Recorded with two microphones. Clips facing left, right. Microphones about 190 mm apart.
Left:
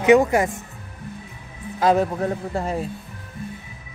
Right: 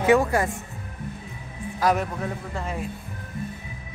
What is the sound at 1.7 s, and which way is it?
Speech, 25° left (ahead or behind).